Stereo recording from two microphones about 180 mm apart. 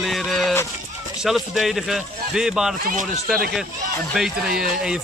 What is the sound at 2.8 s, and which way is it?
Speech, 50° right (ahead or behind).